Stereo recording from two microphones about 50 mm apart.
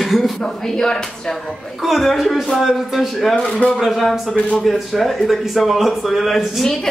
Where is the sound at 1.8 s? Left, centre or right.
Centre.